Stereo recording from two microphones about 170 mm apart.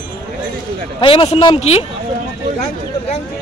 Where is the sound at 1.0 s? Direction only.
30° left (ahead or behind).